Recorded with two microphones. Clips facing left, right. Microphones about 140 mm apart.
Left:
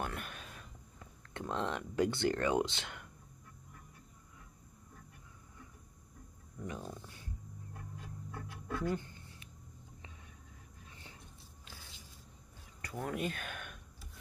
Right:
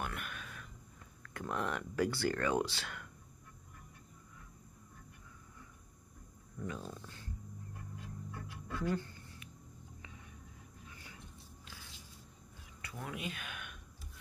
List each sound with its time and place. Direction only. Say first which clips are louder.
0.0 s a sound: left 1 dB; 35° left (ahead or behind)
1.4 s speech: left 1 dB; 20° left (ahead or behind)
6.6 s roaring cats: even; 15° left (ahead or behind)
8.8 s speech: right 1 dB; 20° left (ahead or behind)
10.9 s a sound: even; 30° left (ahead or behind)
12.8 s speech: left 5 dB; 40° left (ahead or behind)